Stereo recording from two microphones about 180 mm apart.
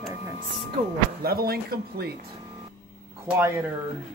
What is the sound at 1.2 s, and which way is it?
Speech, 55° right (ahead or behind).